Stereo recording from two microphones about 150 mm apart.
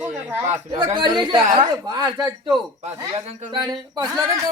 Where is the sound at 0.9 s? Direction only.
30° right (ahead or behind).